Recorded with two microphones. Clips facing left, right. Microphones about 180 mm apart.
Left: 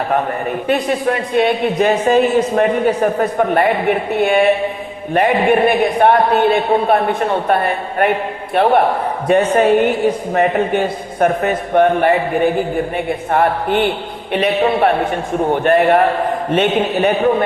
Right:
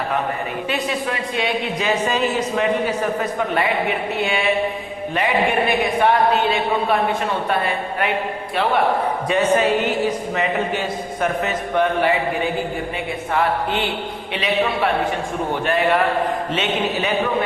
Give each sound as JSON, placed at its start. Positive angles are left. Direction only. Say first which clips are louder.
{"t": 0.7, "sound": "a man's voice", "louder": "left 8 dB", "side_deg": 55}